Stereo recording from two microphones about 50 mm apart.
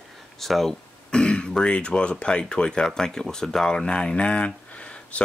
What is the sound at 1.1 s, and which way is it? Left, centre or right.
Speech, centre.